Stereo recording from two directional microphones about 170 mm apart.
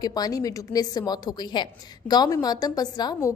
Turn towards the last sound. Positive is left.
turn(degrees=20)  # may be behind; listen again after turning